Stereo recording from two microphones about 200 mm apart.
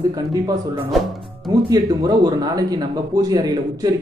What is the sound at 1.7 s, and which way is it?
Speech, 20° right (ahead or behind).